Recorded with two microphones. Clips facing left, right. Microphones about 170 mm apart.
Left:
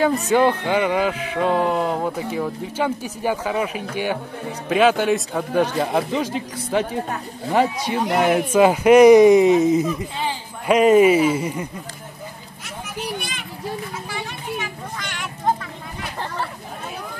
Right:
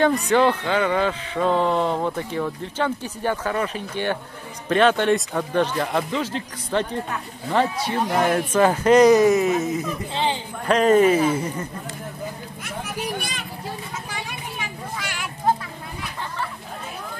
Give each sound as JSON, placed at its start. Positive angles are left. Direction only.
{"t": 0.0, "sound": "speech", "side_deg": 5}
{"t": 13.2, "sound": "children playing", "side_deg": -40}
{"t": 14.1, "sound": "a sound", "side_deg": -10}